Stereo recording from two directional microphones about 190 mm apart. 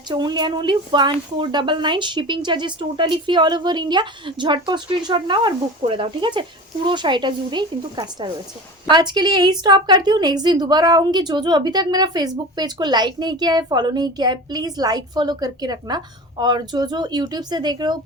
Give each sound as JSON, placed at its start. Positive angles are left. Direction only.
{"t": 0.1, "sound": "a woman's voice", "side_deg": -25}